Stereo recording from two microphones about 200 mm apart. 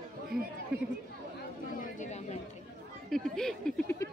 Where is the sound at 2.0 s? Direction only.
35° left (ahead or behind).